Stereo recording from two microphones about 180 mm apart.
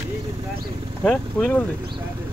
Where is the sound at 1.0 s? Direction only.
5° left (ahead or behind).